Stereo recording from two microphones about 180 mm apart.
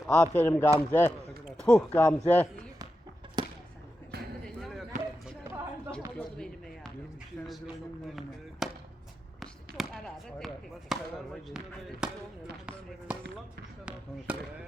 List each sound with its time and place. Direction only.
0.0 s speech: 5° left (ahead or behind)
3.4 s a sound: 25° right (ahead or behind)
4.4 s chop: centre (ahead or behind)
6.1 s basketball bounce: 5° left (ahead or behind)
8.0 s a sound: centre (ahead or behind)
9.4 s basketball bounce: centre (ahead or behind)
11.4 s speech: 5° right (ahead or behind)
14.3 s speech: 5° right (ahead or behind)